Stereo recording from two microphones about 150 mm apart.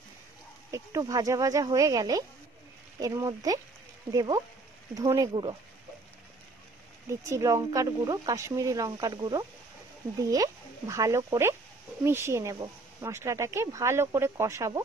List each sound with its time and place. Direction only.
0.7 s speech: 20° right (ahead or behind)
7.2 s speech: 20° right (ahead or behind)